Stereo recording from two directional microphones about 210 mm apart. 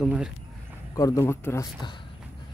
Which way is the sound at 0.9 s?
15° left (ahead or behind).